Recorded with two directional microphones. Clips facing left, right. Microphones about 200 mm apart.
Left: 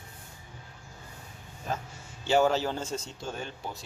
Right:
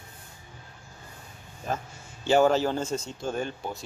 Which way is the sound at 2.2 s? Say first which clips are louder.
Right 3 dB; 50° right (ahead or behind).